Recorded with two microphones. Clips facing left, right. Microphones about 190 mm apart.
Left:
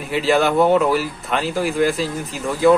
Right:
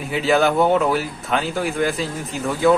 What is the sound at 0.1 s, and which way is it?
Speech, centre (ahead or behind).